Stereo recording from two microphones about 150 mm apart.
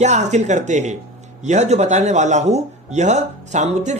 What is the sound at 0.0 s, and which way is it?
Speech, 50° right (ahead or behind).